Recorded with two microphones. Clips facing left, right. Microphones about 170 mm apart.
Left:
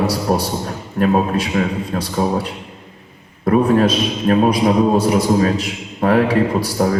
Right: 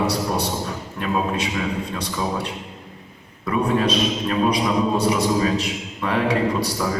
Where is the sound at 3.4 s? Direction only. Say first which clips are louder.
Left 7 dB; 55° left (ahead or behind).